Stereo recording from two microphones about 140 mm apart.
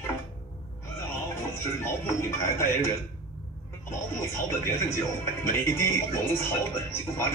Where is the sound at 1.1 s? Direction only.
15° left (ahead or behind).